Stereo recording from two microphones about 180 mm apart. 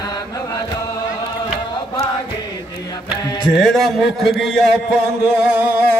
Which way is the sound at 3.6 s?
Centre (ahead or behind).